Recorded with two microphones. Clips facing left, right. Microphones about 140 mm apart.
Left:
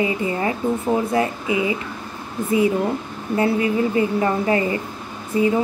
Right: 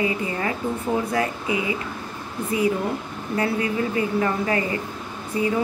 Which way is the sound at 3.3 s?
25° left (ahead or behind).